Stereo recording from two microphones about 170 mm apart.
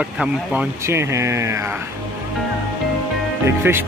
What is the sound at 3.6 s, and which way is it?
Speech, 15° right (ahead or behind).